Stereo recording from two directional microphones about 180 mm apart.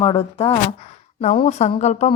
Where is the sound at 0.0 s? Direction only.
30° left (ahead or behind).